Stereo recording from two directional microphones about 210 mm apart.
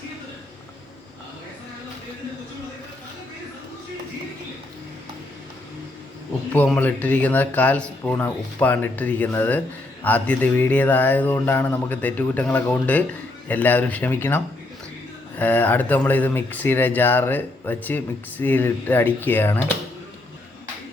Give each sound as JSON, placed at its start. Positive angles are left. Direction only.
{"t": 6.5, "sound": "speech", "side_deg": 10}